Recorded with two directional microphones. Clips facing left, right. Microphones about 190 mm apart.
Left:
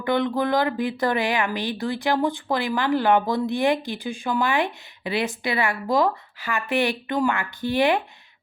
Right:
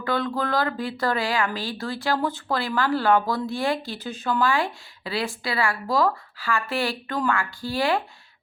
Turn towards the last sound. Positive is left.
turn(degrees=20)  # may be behind; listen again after turning